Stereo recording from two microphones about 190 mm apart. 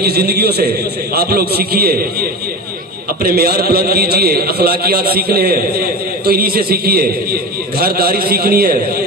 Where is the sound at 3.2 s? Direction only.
50° right (ahead or behind).